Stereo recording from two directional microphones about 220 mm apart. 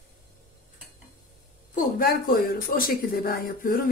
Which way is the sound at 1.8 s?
40° left (ahead or behind).